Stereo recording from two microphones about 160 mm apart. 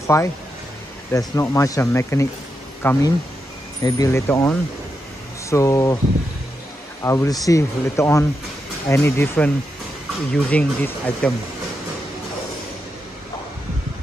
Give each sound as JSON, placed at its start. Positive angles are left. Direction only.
{"t": 0.0, "sound": "speech", "side_deg": 20}
{"t": 7.0, "sound": "speech", "side_deg": 20}